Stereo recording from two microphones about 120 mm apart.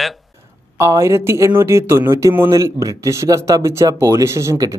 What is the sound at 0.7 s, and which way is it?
Speech, 25° right (ahead or behind).